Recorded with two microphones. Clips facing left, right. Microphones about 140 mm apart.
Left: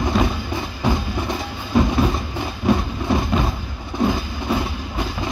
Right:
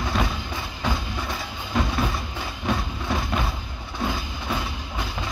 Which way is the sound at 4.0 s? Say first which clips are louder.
Left 8 dB; 15° left (ahead or behind).